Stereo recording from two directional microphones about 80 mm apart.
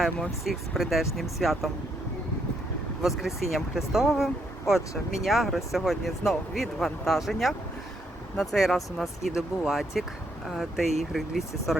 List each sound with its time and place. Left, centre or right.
0.4 s speech: centre
3.0 s speech: centre